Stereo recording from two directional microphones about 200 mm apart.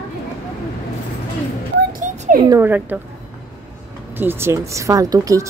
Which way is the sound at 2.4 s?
15° right (ahead or behind).